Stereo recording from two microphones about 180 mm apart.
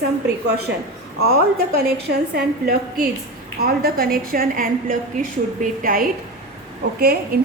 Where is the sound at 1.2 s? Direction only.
60° right (ahead or behind).